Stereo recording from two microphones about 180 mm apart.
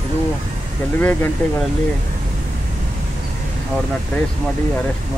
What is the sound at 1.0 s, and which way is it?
Speech, 10° left (ahead or behind).